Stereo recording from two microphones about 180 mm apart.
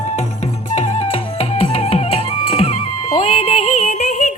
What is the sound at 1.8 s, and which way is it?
Music, 35° left (ahead or behind).